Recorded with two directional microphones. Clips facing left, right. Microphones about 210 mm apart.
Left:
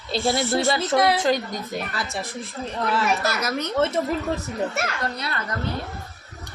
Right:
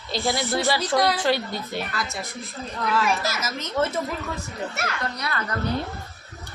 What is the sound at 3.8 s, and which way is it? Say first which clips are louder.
A woman's voice: left 2 dB; 25° left (ahead or behind).